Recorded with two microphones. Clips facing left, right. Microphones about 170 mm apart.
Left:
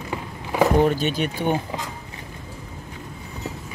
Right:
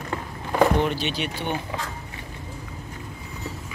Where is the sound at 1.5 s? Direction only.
15° left (ahead or behind).